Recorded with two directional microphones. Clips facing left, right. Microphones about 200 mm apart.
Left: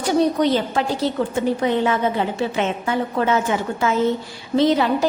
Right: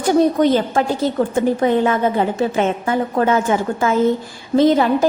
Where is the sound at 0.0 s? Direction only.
50° right (ahead or behind).